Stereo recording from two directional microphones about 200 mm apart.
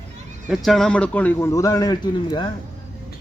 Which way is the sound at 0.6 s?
5° left (ahead or behind).